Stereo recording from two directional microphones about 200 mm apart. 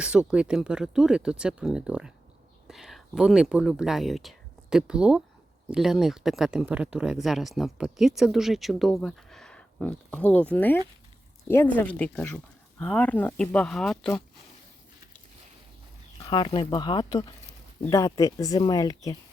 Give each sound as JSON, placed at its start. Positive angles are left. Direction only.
{"t": 0.0, "sound": "speech", "side_deg": -5}
{"t": 16.2, "sound": "speech", "side_deg": 20}